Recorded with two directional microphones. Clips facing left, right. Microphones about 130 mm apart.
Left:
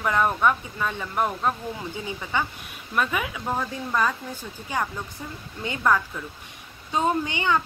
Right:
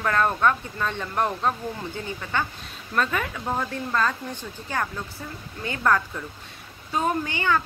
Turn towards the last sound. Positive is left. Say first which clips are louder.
# even
turn(degrees=20)  # may be behind; listen again after turning